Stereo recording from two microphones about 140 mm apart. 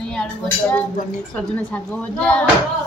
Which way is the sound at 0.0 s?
5° left (ahead or behind).